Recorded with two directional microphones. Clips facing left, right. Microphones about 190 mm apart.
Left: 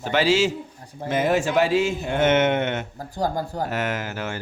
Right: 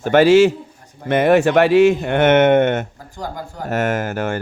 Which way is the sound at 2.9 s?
35° left (ahead or behind).